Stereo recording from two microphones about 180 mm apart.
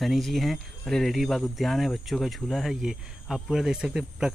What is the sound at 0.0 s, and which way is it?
Speech, centre (ahead or behind).